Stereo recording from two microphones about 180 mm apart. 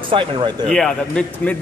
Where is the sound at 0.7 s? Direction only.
5° left (ahead or behind).